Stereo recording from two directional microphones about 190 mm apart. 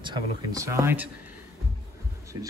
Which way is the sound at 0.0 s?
20° right (ahead or behind).